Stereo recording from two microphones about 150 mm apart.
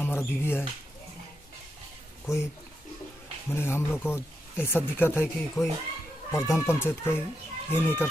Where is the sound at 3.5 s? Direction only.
15° left (ahead or behind).